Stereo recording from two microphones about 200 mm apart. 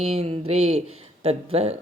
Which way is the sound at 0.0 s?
30° right (ahead or behind).